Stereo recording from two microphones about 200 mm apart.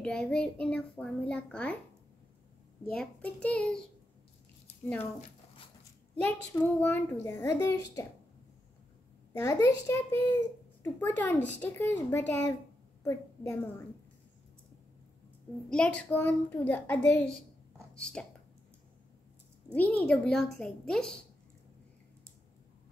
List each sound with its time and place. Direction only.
0.0 s a child's voice: 5° left (ahead or behind)
2.8 s a child's voice: 5° left (ahead or behind)
6.1 s a child's voice: 10° left (ahead or behind)
9.3 s a child's voice: 15° left (ahead or behind)
15.7 s a child's voice: 5° left (ahead or behind)
19.7 s a child's voice: 5° left (ahead or behind)